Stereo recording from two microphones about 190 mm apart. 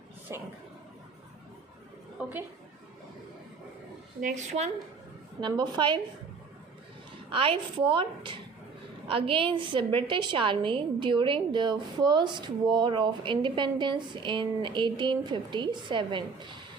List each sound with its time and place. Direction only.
0.3 s speech: 15° right (ahead or behind)
2.2 s a sound: 5° right (ahead or behind)
4.2 s a woman's voice: 40° right (ahead or behind)
5.4 s a woman's voice: 25° right (ahead or behind)
7.3 s a woman's voice: 30° right (ahead or behind)